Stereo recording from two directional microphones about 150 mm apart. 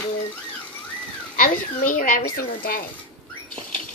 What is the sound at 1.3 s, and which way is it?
A child's voice, 65° left (ahead or behind).